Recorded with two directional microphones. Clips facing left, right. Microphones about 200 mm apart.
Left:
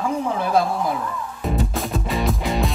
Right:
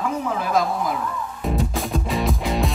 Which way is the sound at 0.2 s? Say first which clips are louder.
Left 2 dB; 30° left (ahead or behind).